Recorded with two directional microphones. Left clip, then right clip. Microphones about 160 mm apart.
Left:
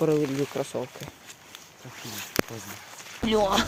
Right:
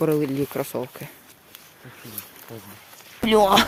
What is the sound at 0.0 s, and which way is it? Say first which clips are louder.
Speech: right 2 dB; 40° right (ahead or behind).